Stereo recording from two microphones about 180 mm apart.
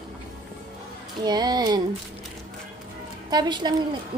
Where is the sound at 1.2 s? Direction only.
20° right (ahead or behind).